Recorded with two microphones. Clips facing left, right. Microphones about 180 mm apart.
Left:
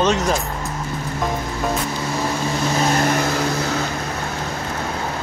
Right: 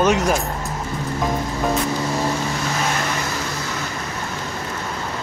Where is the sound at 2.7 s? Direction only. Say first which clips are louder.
Left 5 dB; 40° left (ahead or behind); by 3.9 s 60° left (ahead or behind).